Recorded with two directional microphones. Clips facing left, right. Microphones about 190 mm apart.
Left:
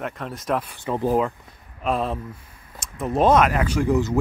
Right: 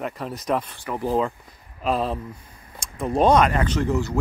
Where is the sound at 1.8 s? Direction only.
Centre (ahead or behind); by 4.2 s 15° left (ahead or behind).